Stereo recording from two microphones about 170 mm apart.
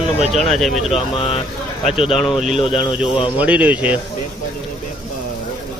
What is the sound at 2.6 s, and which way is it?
Speech, 30° left (ahead or behind).